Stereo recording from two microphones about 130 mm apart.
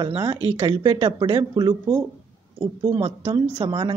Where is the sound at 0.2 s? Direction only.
30° right (ahead or behind).